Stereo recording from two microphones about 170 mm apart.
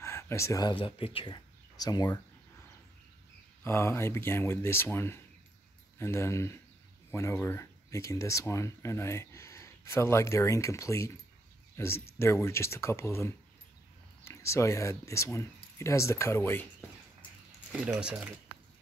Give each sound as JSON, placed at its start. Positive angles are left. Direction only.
{"t": 0.0, "sound": "speech", "side_deg": 15}
{"t": 3.6, "sound": "speech", "side_deg": 15}
{"t": 17.7, "sound": "speech", "side_deg": -5}